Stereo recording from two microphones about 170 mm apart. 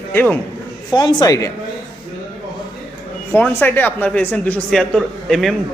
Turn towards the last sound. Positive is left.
turn(degrees=0)  # may be behind; listen again after turning